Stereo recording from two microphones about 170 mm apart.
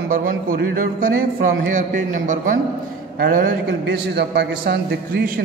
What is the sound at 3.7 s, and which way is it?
A man's voice, 85° right.